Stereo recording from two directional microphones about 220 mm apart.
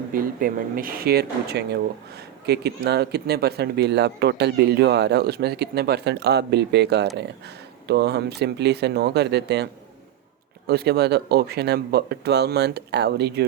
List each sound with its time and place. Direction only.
0.1 s speech: 40° right (ahead or behind)
10.7 s speech: 45° right (ahead or behind)